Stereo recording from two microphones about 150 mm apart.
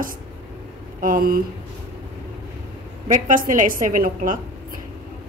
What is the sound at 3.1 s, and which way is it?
A woman's voice, 65° right (ahead or behind).